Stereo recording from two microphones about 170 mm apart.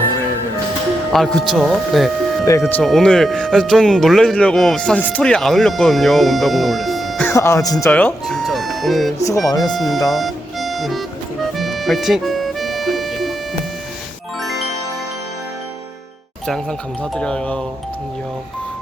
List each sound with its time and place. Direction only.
1.1 s speech: centre (ahead or behind)
7.3 s speech: 15° left (ahead or behind)
7.9 s speech: 10° left (ahead or behind)
9.2 s speech: 20° left (ahead or behind)
9.6 s speech: centre (ahead or behind)
10.1 s music: centre (ahead or behind)
17.0 s speech: 5° left (ahead or behind)